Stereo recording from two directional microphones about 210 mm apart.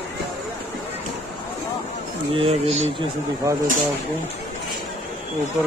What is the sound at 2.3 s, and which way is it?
Speech, 30° right (ahead or behind).